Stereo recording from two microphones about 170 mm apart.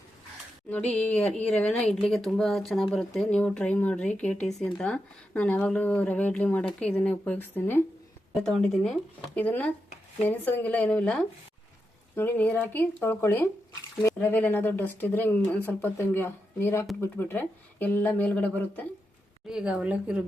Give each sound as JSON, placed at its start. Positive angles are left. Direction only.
{"t": 0.7, "sound": "speech", "side_deg": 5}
{"t": 19.5, "sound": "speech", "side_deg": -5}